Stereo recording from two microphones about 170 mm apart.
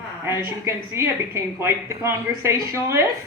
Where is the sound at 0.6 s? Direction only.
15° right (ahead or behind).